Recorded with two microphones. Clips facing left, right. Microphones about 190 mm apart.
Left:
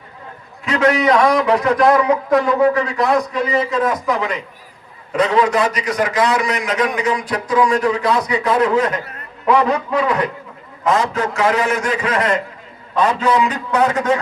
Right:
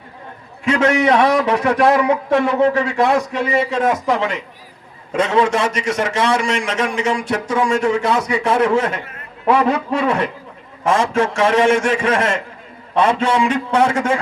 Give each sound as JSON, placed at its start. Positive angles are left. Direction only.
{"t": 0.7, "sound": "a man's voice", "side_deg": -25}